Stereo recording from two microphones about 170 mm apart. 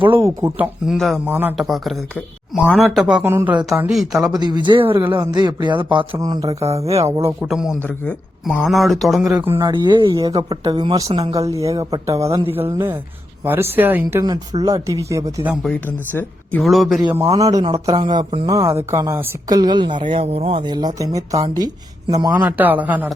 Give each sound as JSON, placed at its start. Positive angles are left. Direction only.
{"t": 0.2, "sound": "speech", "side_deg": -15}
{"t": 0.9, "sound": "speech", "side_deg": 0}
{"t": 1.3, "sound": "speech", "side_deg": -10}
{"t": 1.5, "sound": "speech", "side_deg": 0}
{"t": 4.3, "sound": "speech", "side_deg": -25}
{"t": 6.5, "sound": "speech", "side_deg": -40}
{"t": 8.0, "sound": "speech", "side_deg": 0}
{"t": 9.3, "sound": "speech", "side_deg": -10}
{"t": 11.3, "sound": "speech", "side_deg": -20}
{"t": 16.1, "sound": "speech", "side_deg": 10}
{"t": 16.6, "sound": "speech", "side_deg": 0}
{"t": 17.4, "sound": "speech", "side_deg": -20}
{"t": 18.5, "sound": "speech", "side_deg": -15}
{"t": 22.3, "sound": "speech", "side_deg": -10}